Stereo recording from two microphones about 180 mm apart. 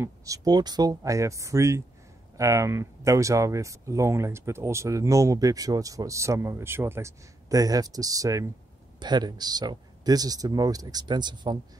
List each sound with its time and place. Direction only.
0.0 s speech: 20° right (ahead or behind)